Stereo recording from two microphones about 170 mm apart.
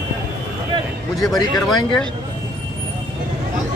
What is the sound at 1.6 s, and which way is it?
Speech, 5° left (ahead or behind).